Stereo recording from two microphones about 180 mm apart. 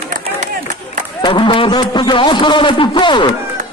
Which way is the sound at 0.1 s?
40° right (ahead or behind).